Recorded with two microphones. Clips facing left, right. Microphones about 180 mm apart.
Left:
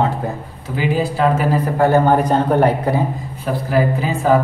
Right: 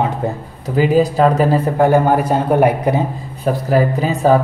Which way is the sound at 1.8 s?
15° right (ahead or behind).